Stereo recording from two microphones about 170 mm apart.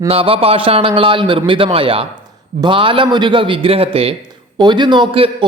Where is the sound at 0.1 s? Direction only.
35° right (ahead or behind).